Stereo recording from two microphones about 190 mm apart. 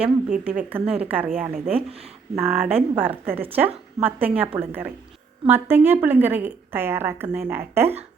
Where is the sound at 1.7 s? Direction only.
30° right (ahead or behind).